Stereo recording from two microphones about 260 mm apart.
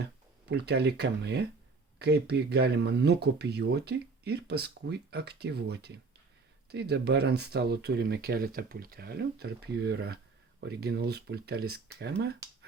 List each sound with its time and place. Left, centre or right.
0.0 s speech: right